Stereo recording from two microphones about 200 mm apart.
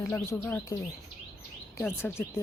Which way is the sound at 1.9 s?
10° left (ahead or behind).